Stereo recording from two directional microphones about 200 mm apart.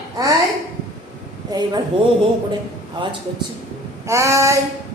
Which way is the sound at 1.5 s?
20° right (ahead or behind).